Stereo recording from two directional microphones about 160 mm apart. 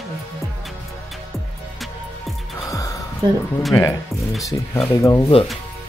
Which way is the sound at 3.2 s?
30° right (ahead or behind).